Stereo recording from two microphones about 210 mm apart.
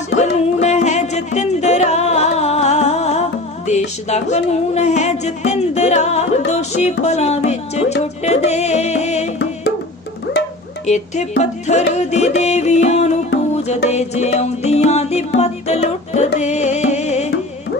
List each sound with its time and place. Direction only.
0.2 s music: 35° left (ahead or behind)
10.8 s music: 35° left (ahead or behind)